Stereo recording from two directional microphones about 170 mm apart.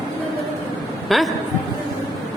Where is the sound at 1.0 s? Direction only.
Centre (ahead or behind).